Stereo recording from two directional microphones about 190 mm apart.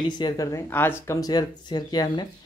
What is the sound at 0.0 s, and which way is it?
Speech, 20° left (ahead or behind).